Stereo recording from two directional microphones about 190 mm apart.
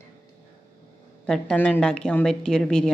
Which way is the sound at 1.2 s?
5° left (ahead or behind).